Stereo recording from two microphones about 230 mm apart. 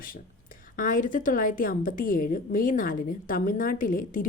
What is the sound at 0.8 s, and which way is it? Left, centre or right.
A woman's voice, left.